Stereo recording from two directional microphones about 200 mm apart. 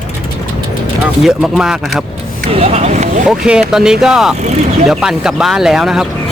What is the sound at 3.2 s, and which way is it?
Speech, 5° right (ahead or behind).